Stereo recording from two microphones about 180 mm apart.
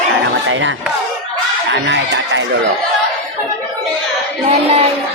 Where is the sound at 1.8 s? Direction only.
80° right.